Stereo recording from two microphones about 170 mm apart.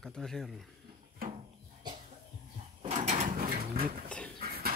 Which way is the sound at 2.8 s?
40° right (ahead or behind).